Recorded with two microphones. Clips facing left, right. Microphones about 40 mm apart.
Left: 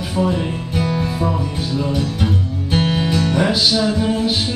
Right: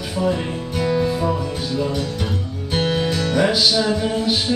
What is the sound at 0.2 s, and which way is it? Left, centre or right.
Speech, left.